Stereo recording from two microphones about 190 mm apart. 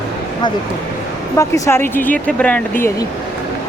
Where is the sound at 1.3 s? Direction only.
15° left (ahead or behind).